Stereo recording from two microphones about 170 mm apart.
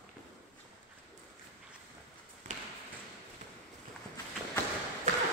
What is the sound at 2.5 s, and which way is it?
Basketball bounce, 50° right (ahead or behind).